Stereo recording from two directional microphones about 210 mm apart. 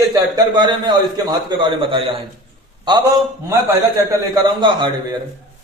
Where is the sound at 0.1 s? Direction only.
20° right (ahead or behind).